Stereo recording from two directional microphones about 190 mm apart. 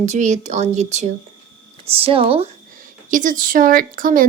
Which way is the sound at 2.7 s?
45° right (ahead or behind).